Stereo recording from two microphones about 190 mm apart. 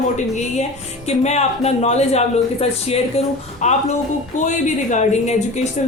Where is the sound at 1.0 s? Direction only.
35° left (ahead or behind).